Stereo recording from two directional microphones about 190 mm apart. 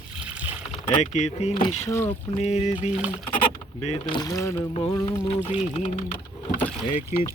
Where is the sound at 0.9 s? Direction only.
40° left (ahead or behind).